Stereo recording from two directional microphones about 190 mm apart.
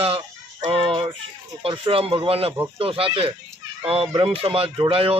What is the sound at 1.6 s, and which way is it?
Speech, 25° right (ahead or behind).